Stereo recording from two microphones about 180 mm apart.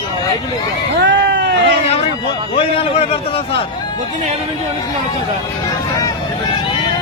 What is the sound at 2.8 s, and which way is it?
Speech, 35° left (ahead or behind).